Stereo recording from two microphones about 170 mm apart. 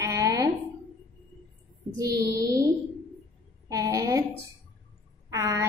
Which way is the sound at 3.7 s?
20° right (ahead or behind).